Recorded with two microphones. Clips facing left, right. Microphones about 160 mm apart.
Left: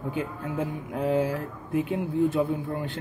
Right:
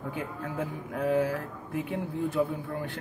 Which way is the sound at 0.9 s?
20° left (ahead or behind).